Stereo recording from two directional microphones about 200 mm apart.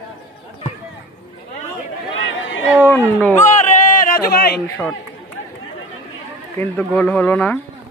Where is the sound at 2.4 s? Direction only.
70° left (ahead or behind).